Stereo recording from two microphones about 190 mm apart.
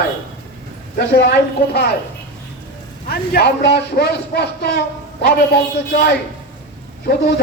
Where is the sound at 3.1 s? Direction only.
60° left (ahead or behind).